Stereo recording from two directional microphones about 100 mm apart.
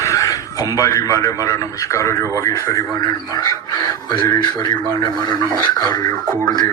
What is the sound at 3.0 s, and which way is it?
Speech, 45° left (ahead or behind).